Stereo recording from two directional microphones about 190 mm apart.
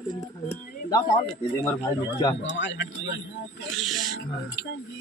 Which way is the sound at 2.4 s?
75° left (ahead or behind).